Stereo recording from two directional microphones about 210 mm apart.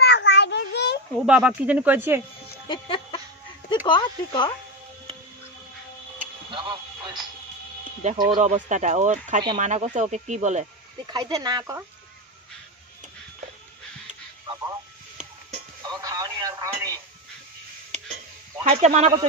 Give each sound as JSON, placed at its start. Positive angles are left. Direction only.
{"t": 0.0, "sound": "a sound", "side_deg": 55}
{"t": 1.1, "sound": "speech", "side_deg": -5}
{"t": 2.7, "sound": "music", "side_deg": 25}
{"t": 3.8, "sound": "speech", "side_deg": 20}
{"t": 6.5, "sound": "speech", "side_deg": -20}
{"t": 8.4, "sound": "speech", "side_deg": -35}
{"t": 11.1, "sound": "speech", "side_deg": -20}
{"t": 15.8, "sound": "telephone", "side_deg": -20}
{"t": 17.9, "sound": "a sound", "side_deg": -35}
{"t": 18.6, "sound": "speech", "side_deg": -30}